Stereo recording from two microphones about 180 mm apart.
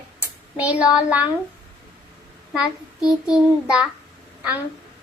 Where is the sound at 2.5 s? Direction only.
5° right (ahead or behind).